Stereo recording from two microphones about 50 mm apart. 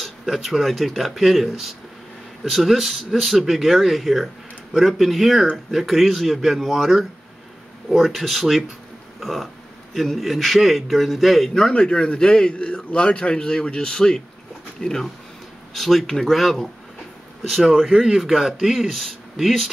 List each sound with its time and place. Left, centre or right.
0.0 s speech: centre
11.7 s a man's voice: centre
17.8 s speech: centre